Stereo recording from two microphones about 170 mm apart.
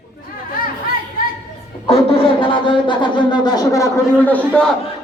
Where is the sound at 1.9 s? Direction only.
35° left (ahead or behind); by 4.7 s 10° left (ahead or behind).